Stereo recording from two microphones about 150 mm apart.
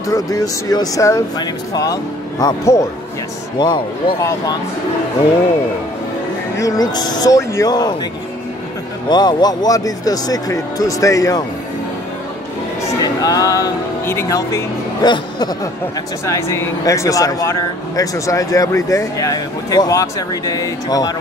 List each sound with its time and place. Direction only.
0.0 s speech: 20° left (ahead or behind)
3.5 s speech: 30° left (ahead or behind)
6.5 s speech: 25° left (ahead or behind)
9.1 s speech: 30° left (ahead or behind)
12.8 s speech: 25° left (ahead or behind)